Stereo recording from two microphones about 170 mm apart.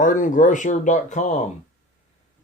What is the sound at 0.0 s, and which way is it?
Speech, 50° left (ahead or behind).